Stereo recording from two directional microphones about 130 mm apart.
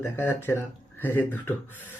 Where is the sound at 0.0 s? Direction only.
15° left (ahead or behind).